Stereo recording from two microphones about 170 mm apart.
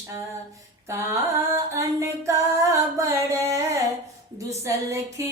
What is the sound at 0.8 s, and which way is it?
Singing, 20° right (ahead or behind).